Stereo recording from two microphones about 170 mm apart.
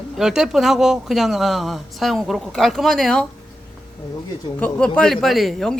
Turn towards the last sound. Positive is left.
turn(degrees=0)  # may be behind; listen again after turning